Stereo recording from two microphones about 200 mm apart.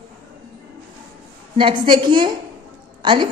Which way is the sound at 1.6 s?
25° right (ahead or behind).